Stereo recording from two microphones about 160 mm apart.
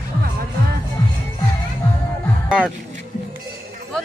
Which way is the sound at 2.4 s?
5° right (ahead or behind).